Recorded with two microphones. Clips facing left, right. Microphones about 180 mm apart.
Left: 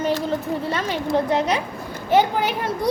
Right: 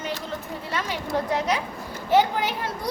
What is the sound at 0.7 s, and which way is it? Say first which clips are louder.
A woman's voice: left 3 dB; 25° left (ahead or behind).